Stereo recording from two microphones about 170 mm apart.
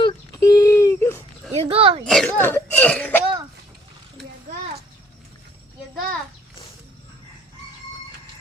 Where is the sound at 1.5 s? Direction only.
35° right (ahead or behind).